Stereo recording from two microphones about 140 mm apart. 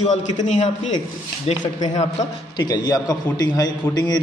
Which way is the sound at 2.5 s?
30° left (ahead or behind).